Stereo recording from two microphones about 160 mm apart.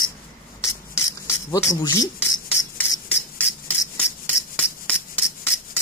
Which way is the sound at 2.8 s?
10° left (ahead or behind).